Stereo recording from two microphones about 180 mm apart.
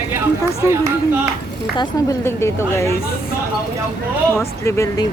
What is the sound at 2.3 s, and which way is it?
Speech, 15° left (ahead or behind).